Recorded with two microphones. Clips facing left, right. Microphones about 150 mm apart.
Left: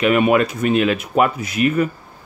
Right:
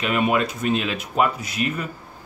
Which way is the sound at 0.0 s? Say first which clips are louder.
Left 6 dB; 60° left (ahead or behind).